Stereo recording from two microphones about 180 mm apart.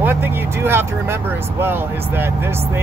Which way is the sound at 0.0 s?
10° right (ahead or behind).